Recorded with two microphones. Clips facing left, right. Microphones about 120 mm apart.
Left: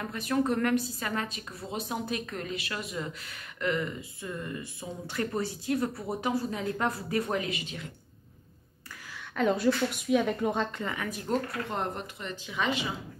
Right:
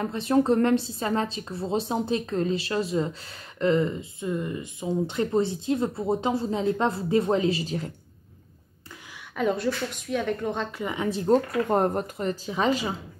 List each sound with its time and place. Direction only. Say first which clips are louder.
0.0 s a woman's voice: right 6 dB; 30° right (ahead or behind)
9.4 s speech: even; centre (ahead or behind)
10.8 s speech: right 5 dB; 15° right (ahead or behind)
11.1 s speech: right 11 dB; 30° right (ahead or behind)